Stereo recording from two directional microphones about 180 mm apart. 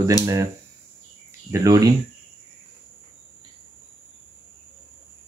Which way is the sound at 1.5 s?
20° right (ahead or behind).